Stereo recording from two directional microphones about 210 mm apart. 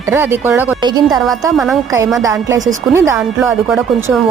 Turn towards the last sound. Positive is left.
turn(degrees=-5)  # may be behind; listen again after turning